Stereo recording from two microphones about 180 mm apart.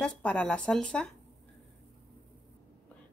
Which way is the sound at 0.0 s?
5° left (ahead or behind).